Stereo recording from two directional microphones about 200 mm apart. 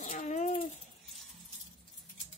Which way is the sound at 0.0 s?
40° left (ahead or behind).